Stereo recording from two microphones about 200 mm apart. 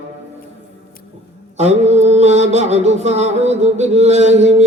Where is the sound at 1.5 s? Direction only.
35° right (ahead or behind).